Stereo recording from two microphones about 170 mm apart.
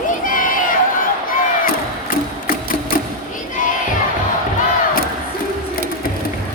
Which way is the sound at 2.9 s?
55° left (ahead or behind).